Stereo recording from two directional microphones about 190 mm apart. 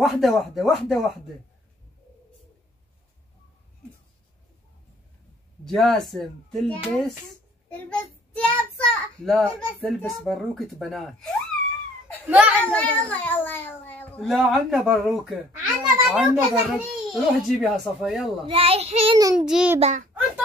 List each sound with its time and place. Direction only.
0.0 s a child's voice: centre (ahead or behind)
5.7 s a child's voice: centre (ahead or behind)
12.3 s a child's voice: 10° right (ahead or behind)
12.6 s a child's voice: 5° left (ahead or behind)
14.2 s a child's voice: centre (ahead or behind)
18.5 s child singing: 30° right (ahead or behind)
19.3 s a child's voice: 5° right (ahead or behind)
19.8 s child singing: 40° right (ahead or behind)